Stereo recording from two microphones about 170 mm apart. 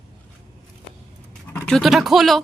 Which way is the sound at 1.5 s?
5° left (ahead or behind).